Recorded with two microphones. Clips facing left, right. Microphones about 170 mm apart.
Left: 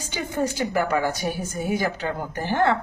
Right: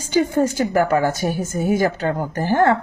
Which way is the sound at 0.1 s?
40° right (ahead or behind).